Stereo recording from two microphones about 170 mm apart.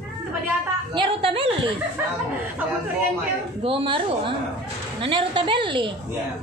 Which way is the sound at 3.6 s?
30° right (ahead or behind).